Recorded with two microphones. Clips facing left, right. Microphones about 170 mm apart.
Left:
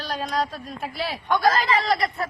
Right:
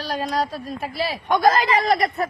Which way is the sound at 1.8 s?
50° right (ahead or behind).